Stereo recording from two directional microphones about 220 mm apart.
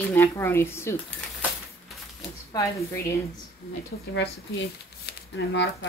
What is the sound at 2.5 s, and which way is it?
Speech, 15° left (ahead or behind).